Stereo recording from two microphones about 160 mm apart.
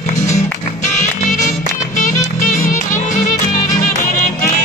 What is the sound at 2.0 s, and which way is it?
Music, 55° left (ahead or behind).